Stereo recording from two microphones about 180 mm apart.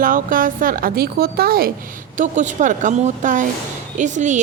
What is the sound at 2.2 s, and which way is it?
A woman's voice, 45° right (ahead or behind).